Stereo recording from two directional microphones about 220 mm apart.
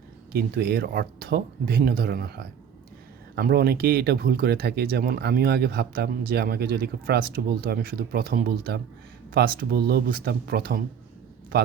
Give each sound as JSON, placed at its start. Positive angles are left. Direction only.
{"t": 0.3, "sound": "speech", "side_deg": -45}